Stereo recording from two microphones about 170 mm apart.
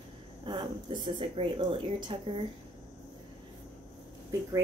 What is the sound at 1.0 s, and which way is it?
Speech, 30° right (ahead or behind).